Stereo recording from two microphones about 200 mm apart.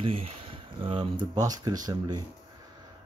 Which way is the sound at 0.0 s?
30° right (ahead or behind).